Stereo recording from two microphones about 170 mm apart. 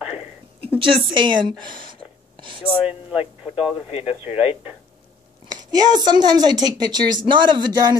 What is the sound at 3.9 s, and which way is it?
Speech, 35° left (ahead or behind).